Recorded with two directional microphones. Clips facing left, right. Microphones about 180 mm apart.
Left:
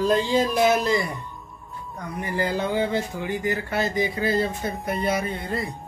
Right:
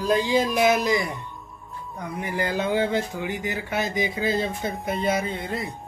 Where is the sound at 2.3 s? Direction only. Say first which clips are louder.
Even; 15° right (ahead or behind).